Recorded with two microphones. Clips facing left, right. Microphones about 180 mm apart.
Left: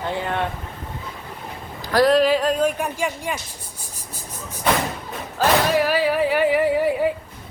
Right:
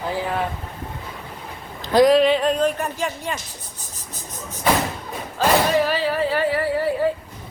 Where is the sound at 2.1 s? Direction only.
Centre (ahead or behind).